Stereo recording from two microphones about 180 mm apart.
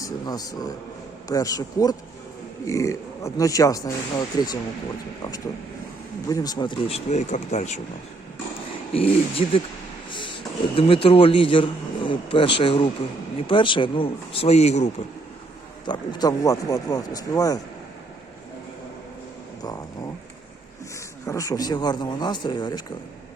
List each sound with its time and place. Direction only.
0.0 s speech: 20° left (ahead or behind)
6.2 s speech: 20° left (ahead or behind); by 7.8 s 40° left (ahead or behind)
8.9 s a man's voice: 30° left (ahead or behind)
15.9 s speech: 20° left (ahead or behind)
21.2 s speech: 20° left (ahead or behind)